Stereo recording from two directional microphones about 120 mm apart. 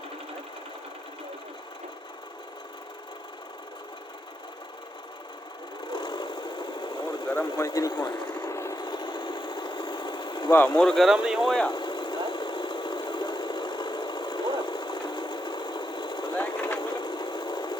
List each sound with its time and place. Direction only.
5.9 s vehicle: 40° left (ahead or behind)
7.6 s speech: 30° left (ahead or behind)
8.4 s a sound: 20° left (ahead or behind)
8.7 s engine: 40° left (ahead or behind)
10.8 s speech: 5° left (ahead or behind)
11.7 s engine: 40° left (ahead or behind)
16.6 s vehicle: 10° left (ahead or behind)
16.9 s sewing machine: 40° left (ahead or behind)